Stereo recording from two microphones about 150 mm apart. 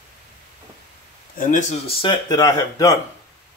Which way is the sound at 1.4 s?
55° left (ahead or behind).